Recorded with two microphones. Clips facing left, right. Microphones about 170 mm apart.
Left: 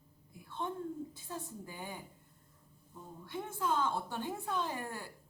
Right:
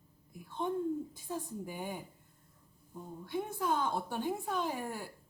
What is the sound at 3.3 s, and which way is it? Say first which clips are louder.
A woman's voice: right 2 dB; 15° right (ahead or behind).